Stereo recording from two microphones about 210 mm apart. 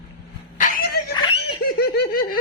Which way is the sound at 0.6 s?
45° left (ahead or behind).